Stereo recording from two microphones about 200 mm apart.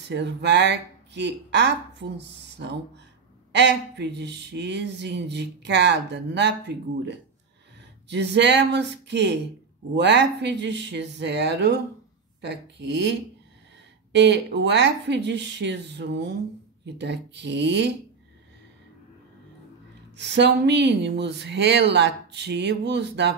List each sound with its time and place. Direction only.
0.1 s speech: 60° right (ahead or behind)
8.1 s speech: 60° right (ahead or behind)
20.2 s speech: 60° right (ahead or behind)